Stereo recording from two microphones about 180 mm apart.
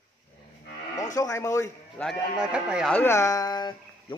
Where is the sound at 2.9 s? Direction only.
10° left (ahead or behind).